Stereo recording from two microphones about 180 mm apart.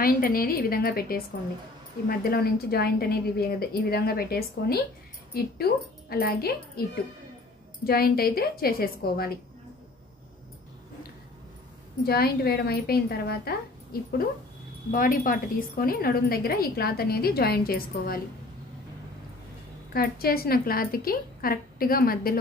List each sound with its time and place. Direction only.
0.0 s a woman's voice: 55° left (ahead or behind)
7.8 s a woman's voice: 55° left (ahead or behind)
12.1 s a woman's voice: 60° left (ahead or behind)
14.9 s a woman's voice: 50° left (ahead or behind)
19.9 s a woman's voice: 55° left (ahead or behind)